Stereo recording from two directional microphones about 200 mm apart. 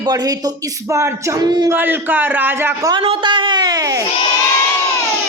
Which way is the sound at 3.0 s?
25° right (ahead or behind).